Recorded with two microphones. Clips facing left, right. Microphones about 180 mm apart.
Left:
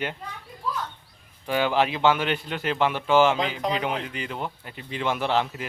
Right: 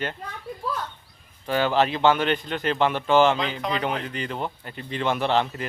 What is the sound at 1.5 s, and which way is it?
A man's voice, 10° left (ahead or behind).